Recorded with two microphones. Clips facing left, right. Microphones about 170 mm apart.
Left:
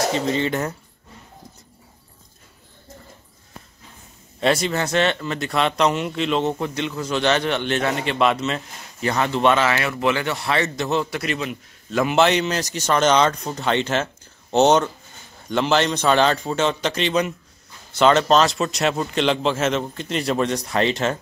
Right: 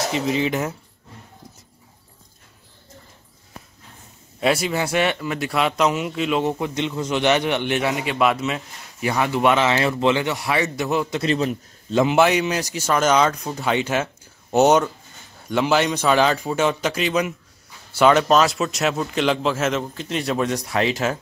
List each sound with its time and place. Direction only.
0.1 s a man's voice: 5° right (ahead or behind)
4.4 s speech: 5° right (ahead or behind)
11.1 s a man's voice: 35° right (ahead or behind)
12.0 s a man's voice: 15° right (ahead or behind)